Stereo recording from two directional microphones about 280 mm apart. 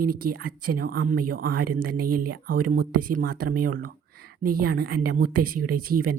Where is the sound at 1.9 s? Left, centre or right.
Right.